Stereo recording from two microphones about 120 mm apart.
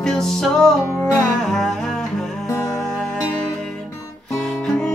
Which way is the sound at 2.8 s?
10° left (ahead or behind).